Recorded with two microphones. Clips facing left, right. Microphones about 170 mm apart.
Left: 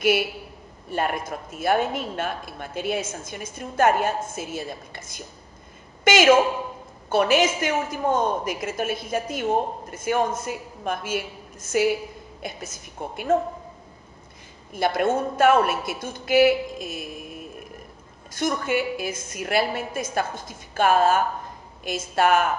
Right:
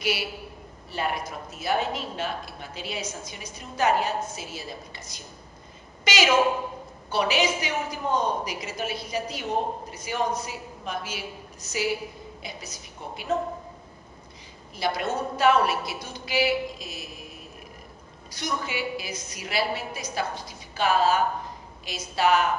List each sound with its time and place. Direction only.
0.8 s a woman's voice: 50° left (ahead or behind)
14.7 s a woman's voice: 50° left (ahead or behind)